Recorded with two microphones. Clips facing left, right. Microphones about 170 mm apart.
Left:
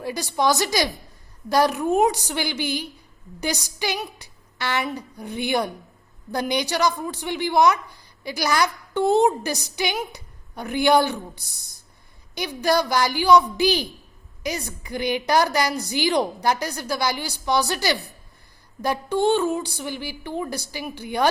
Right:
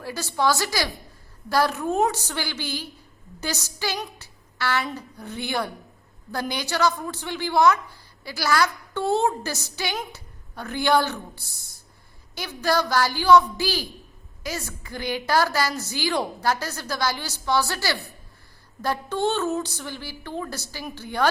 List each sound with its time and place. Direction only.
0.0 s a woman's voice: 15° left (ahead or behind)